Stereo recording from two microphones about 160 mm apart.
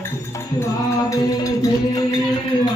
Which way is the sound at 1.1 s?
20° left (ahead or behind).